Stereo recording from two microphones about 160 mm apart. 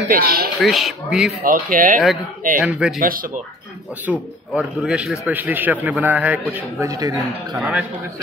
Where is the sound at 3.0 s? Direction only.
60° right (ahead or behind).